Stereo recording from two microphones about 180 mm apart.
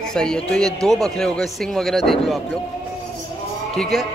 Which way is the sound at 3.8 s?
Centre (ahead or behind).